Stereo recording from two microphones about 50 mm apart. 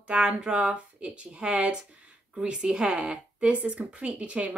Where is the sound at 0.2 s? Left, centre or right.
Centre.